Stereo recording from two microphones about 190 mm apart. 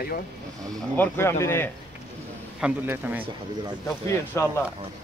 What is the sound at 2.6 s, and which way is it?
Speech, 10° right (ahead or behind).